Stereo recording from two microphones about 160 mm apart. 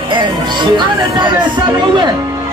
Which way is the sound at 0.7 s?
30° right (ahead or behind).